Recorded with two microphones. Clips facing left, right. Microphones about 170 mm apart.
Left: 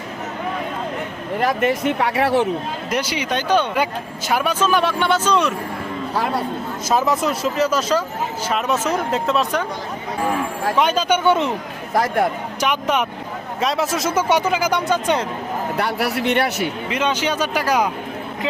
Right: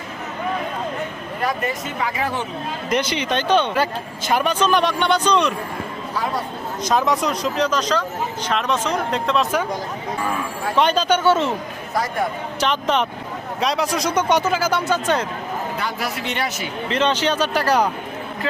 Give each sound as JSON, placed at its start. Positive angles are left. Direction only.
{"t": 1.6, "sound": "speech", "side_deg": 65}
{"t": 2.9, "sound": "speech", "side_deg": 10}
{"t": 6.8, "sound": "speech", "side_deg": 5}
{"t": 10.8, "sound": "speech", "side_deg": 10}
{"t": 11.9, "sound": "speech", "side_deg": 65}
{"t": 12.5, "sound": "speech", "side_deg": 10}
{"t": 15.8, "sound": "speech", "side_deg": 65}
{"t": 16.9, "sound": "speech", "side_deg": 10}